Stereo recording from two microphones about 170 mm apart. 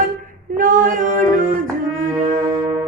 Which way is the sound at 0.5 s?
55° right (ahead or behind).